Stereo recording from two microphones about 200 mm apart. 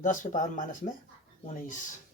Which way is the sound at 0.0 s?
40° left (ahead or behind).